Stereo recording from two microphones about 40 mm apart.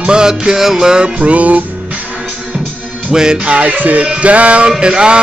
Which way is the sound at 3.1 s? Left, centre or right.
Centre.